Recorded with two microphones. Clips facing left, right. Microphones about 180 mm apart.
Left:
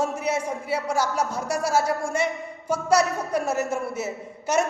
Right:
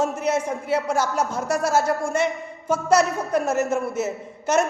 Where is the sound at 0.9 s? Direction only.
50° right (ahead or behind).